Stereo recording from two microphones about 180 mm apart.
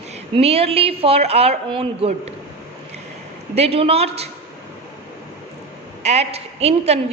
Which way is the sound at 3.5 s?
35° right (ahead or behind).